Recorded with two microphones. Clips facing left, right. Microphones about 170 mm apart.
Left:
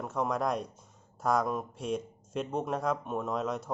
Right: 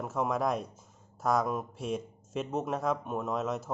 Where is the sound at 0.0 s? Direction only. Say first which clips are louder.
Right 1 dB; 5° right (ahead or behind).